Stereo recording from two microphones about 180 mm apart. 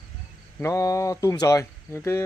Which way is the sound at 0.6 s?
15° left (ahead or behind).